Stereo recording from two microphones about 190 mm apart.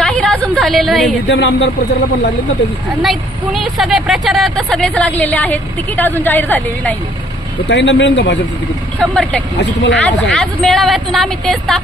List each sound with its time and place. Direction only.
0.0 s a sound: 5° left (ahead or behind)
1.3 s speech: 65° left (ahead or behind)
3.0 s a woman's voice: centre (ahead or behind)
7.6 s speech: 65° left (ahead or behind)
9.0 s a woman's voice: 5° left (ahead or behind)
9.6 s speech: 65° left (ahead or behind)
10.0 s a woman's voice: 5° left (ahead or behind)